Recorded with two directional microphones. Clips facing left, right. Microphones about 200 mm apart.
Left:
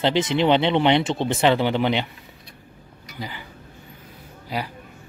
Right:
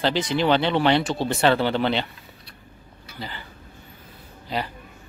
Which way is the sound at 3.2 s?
15° left (ahead or behind).